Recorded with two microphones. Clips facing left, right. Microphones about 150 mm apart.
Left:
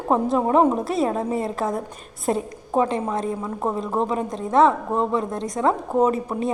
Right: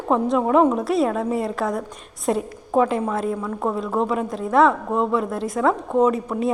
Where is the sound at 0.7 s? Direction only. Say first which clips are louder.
Right 2 dB; centre (ahead or behind).